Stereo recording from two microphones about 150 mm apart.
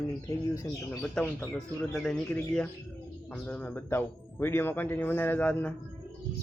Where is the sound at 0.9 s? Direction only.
5° left (ahead or behind).